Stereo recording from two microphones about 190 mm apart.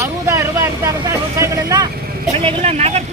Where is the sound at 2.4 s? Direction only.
30° right (ahead or behind).